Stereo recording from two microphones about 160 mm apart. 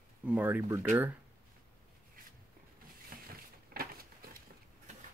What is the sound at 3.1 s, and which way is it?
Vehicle, 65° right (ahead or behind).